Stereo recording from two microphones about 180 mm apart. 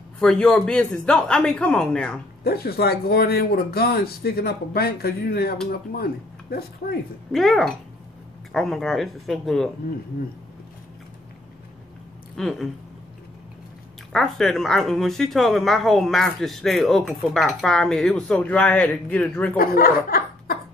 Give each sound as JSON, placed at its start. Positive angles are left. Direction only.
{"t": 0.2, "sound": "speech", "side_deg": 5}
{"t": 2.4, "sound": "speech", "side_deg": 60}
{"t": 7.3, "sound": "speech", "side_deg": 0}
{"t": 12.4, "sound": "speech", "side_deg": 0}
{"t": 14.1, "sound": "speech", "side_deg": 0}
{"t": 19.5, "sound": "speech", "side_deg": 55}